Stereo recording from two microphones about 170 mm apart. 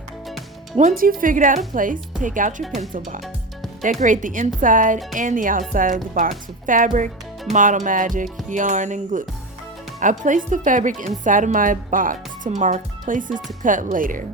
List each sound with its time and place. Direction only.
0.8 s speech: 50° right (ahead or behind)